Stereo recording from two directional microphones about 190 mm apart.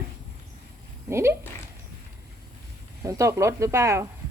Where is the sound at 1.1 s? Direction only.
15° right (ahead or behind).